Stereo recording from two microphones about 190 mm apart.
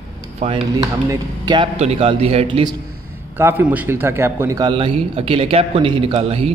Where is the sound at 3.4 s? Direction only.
10° right (ahead or behind); by 6.5 s 30° right (ahead or behind).